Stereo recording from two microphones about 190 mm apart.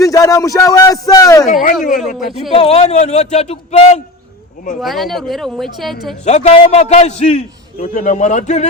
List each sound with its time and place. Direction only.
0.0 s speech: 20° left (ahead or behind)
2.1 s speech: centre (ahead or behind)
2.5 s a man's voice: 35° left (ahead or behind)
4.8 s speech: centre (ahead or behind)
6.2 s a man's voice: 35° left (ahead or behind)